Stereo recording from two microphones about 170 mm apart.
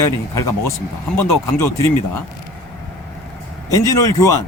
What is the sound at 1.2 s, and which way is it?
Speech, 15° left (ahead or behind).